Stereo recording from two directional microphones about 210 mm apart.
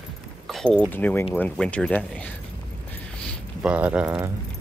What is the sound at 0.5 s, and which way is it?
Speech, 5° left (ahead or behind).